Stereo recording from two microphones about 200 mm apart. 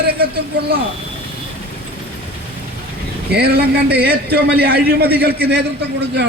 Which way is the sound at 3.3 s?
55° right (ahead or behind).